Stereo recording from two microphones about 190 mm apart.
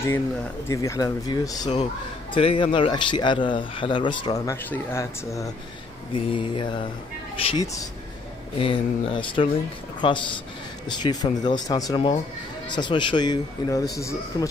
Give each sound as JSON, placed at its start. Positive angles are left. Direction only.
{"t": 0.1, "sound": "a man's voice", "side_deg": 10}
{"t": 6.1, "sound": "a man's voice", "side_deg": 30}
{"t": 8.5, "sound": "a man's voice", "side_deg": 25}